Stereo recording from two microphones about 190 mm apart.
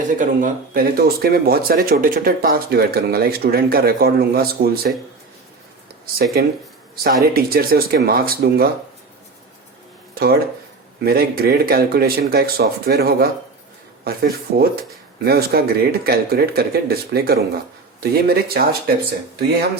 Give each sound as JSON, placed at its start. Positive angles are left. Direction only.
{"t": 0.1, "sound": "speech", "side_deg": -45}
{"t": 6.2, "sound": "speech", "side_deg": -55}
{"t": 11.0, "sound": "speech", "side_deg": -50}